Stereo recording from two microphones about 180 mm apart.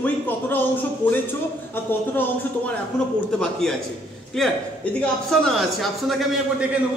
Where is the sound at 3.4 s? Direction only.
5° left (ahead or behind).